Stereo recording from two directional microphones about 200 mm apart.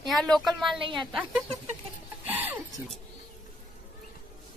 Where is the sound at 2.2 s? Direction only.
10° right (ahead or behind).